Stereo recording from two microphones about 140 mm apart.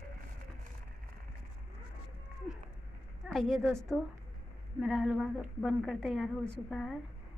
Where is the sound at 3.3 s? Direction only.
Centre (ahead or behind).